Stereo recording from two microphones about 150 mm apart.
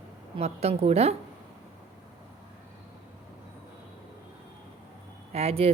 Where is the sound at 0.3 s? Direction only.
45° right (ahead or behind).